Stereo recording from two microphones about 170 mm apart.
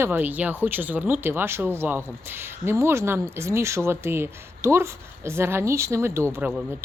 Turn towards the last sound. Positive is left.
turn(degrees=-10)  # may be behind; listen again after turning